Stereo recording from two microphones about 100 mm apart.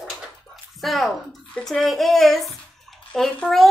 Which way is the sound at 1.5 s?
5° left (ahead or behind).